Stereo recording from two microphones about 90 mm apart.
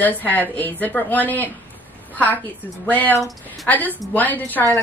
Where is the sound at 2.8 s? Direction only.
20° left (ahead or behind).